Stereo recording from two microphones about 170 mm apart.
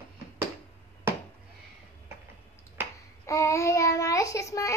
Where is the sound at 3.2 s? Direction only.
20° left (ahead or behind).